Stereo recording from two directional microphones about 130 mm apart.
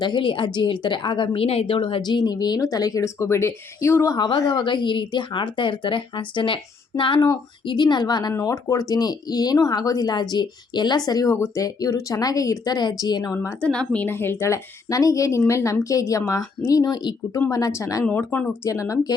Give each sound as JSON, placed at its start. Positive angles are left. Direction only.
{"t": 0.0, "sound": "a woman's voice", "side_deg": 40}
{"t": 13.6, "sound": "speech", "side_deg": 10}
{"t": 18.7, "sound": "speech", "side_deg": 25}